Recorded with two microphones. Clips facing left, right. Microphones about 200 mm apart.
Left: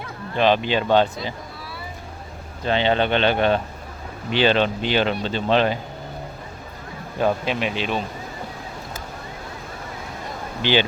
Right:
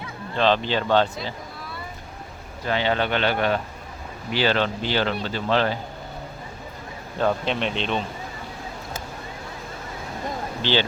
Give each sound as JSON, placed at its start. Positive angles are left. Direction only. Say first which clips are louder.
{"t": 0.3, "sound": "speech", "louder": "left 2 dB", "side_deg": 15}
{"t": 2.6, "sound": "a man's voice", "louder": "left 3 dB", "side_deg": 25}
{"t": 7.2, "sound": "speech", "louder": "left 1 dB", "side_deg": 10}
{"t": 10.6, "sound": "speech", "louder": "left 3 dB", "side_deg": 15}